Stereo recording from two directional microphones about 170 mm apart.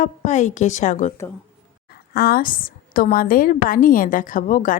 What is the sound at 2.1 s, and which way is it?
A woman's voice, 60° left (ahead or behind).